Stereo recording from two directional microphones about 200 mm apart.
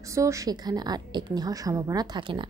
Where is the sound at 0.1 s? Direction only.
15° right (ahead or behind).